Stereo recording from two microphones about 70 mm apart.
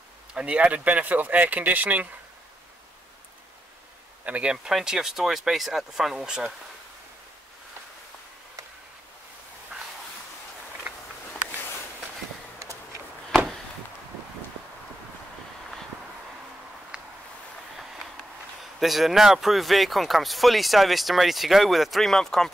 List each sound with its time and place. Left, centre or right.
0.3 s speech: centre
4.3 s speech: centre
18.6 s speech: centre